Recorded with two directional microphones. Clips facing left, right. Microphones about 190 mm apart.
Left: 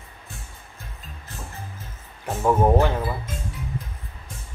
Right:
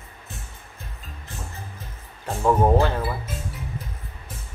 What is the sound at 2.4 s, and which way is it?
Speech, 10° left (ahead or behind).